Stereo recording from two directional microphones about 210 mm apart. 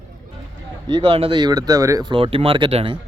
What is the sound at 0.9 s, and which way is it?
Speech, 20° right (ahead or behind).